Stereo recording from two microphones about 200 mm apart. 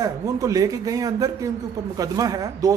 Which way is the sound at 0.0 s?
15° right (ahead or behind).